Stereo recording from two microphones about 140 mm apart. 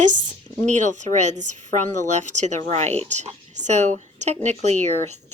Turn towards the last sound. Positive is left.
turn(degrees=-55)  # may be behind; listen again after turning